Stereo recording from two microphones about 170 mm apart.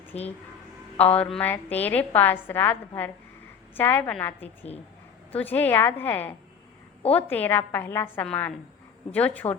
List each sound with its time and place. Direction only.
0.1 s speech: 40° left (ahead or behind)
1.2 s a woman's voice: 10° left (ahead or behind)